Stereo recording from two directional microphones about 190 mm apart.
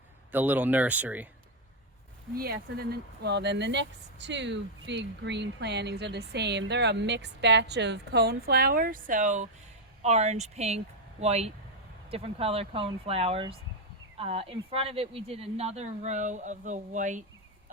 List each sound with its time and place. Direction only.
0.3 s speech: 10° right (ahead or behind)
2.3 s speech: 50° right (ahead or behind)